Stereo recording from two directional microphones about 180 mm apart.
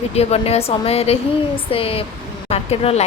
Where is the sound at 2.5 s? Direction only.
35° left (ahead or behind).